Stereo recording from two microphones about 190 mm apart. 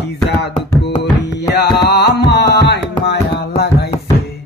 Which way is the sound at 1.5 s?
60° left (ahead or behind).